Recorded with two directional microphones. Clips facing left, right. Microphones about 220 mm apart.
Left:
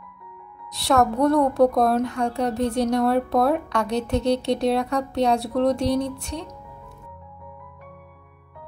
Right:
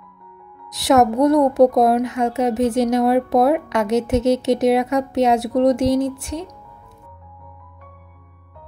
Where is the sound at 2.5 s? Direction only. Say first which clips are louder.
Right 5 dB; 85° right.